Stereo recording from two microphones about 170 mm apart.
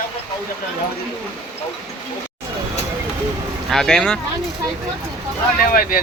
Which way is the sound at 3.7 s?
5° left (ahead or behind).